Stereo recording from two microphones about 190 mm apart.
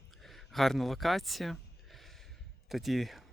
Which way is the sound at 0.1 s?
Centre (ahead or behind).